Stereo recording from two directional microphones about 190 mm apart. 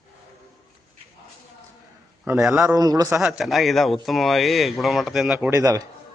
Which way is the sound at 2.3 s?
5° right (ahead or behind).